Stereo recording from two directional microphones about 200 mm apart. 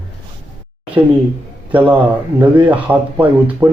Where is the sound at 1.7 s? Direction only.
5° right (ahead or behind).